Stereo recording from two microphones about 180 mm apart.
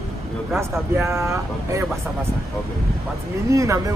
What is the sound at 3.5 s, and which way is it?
Speech, 20° right (ahead or behind).